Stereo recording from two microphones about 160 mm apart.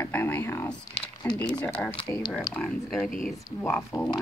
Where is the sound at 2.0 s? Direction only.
20° left (ahead or behind).